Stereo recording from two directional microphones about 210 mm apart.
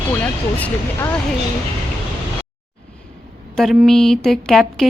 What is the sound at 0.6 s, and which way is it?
Speech, 5° left (ahead or behind).